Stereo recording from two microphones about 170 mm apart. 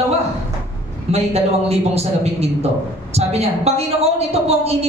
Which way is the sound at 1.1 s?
35° right (ahead or behind).